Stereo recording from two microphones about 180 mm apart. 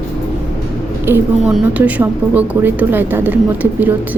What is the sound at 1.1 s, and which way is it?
A woman's voice, 10° right (ahead or behind).